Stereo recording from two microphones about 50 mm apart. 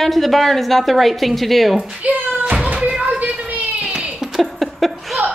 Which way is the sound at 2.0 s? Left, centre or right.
Right.